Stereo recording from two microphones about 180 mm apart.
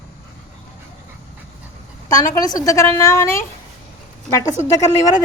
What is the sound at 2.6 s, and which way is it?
A woman's voice, 20° left (ahead or behind).